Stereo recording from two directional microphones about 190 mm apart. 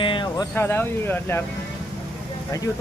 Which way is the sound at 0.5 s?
10° left (ahead or behind).